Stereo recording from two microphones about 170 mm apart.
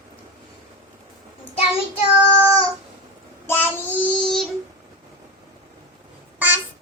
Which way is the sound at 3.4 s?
15° left (ahead or behind).